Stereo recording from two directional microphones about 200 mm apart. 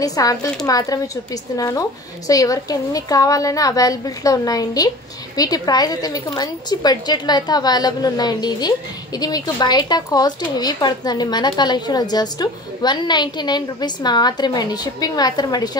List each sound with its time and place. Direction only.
0.0 s a woman's voice: 15° left (ahead or behind)